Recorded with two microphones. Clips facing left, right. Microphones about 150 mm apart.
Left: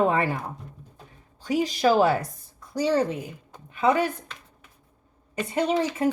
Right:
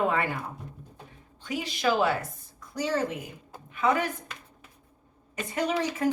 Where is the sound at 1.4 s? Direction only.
40° left (ahead or behind).